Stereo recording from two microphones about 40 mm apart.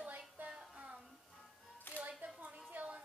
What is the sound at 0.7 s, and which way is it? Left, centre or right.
Music, right.